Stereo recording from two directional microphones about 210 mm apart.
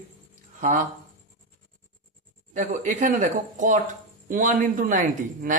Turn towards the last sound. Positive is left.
turn(degrees=-40)  # may be behind; listen again after turning